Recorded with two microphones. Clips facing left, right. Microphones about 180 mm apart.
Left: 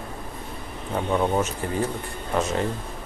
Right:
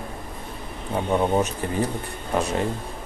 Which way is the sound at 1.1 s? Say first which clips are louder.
Right 2 dB; 15° right (ahead or behind).